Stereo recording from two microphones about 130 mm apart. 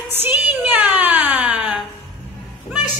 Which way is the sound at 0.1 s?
15° right (ahead or behind).